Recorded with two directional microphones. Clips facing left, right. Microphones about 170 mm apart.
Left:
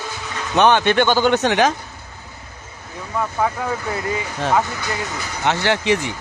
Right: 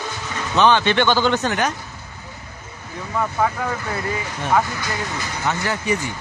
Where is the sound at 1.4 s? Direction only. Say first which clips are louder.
Left 5 dB; 90° left.